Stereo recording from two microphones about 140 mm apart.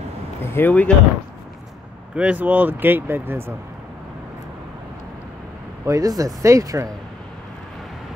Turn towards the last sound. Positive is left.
turn(degrees=-25)  # may be behind; listen again after turning